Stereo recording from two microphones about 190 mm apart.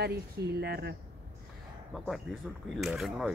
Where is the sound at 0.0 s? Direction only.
60° right (ahead or behind).